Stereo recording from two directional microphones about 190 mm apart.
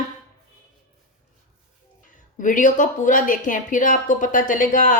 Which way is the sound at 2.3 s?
45° left (ahead or behind).